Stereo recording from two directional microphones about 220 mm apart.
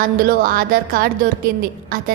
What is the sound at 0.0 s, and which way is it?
A woman's voice, 40° right (ahead or behind).